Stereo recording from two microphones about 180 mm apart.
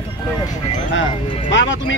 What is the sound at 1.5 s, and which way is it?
Speech, 90° left.